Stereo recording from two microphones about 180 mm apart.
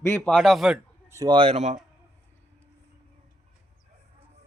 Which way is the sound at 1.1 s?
20° right (ahead or behind).